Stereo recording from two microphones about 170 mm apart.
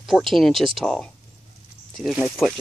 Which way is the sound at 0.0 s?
Centre (ahead or behind).